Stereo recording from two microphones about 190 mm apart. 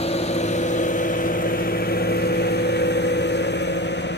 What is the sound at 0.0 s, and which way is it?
Vehicle, 35° left (ahead or behind).